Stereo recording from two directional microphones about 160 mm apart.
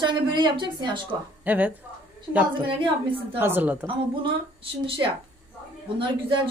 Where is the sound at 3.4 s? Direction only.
10° right (ahead or behind).